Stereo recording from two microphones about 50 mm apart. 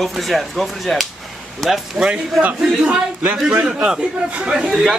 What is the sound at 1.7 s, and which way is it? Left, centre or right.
A man's voice, centre.